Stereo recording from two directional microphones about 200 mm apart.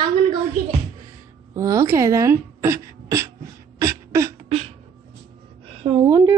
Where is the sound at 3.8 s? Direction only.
15° right (ahead or behind).